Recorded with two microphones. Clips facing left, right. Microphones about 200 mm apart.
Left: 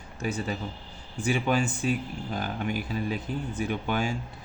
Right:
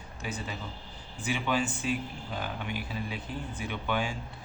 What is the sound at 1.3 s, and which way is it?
Speech, 40° left (ahead or behind).